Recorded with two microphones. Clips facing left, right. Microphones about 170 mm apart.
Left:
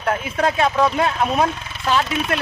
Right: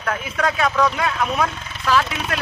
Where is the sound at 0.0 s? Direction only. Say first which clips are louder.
Left 3 dB; 30° left (ahead or behind).